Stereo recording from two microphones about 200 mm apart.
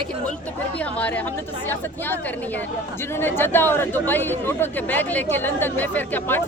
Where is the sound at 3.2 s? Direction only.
10° left (ahead or behind).